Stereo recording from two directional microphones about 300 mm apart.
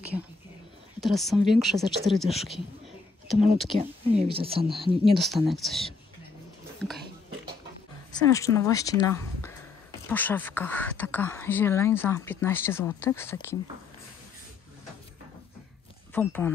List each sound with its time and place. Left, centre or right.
1.0 s speech: centre
4.2 s speech: centre
5.1 s speech: centre
8.1 s speech: centre
16.1 s speech: centre